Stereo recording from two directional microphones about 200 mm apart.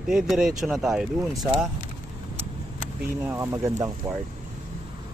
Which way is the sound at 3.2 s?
10° right (ahead or behind).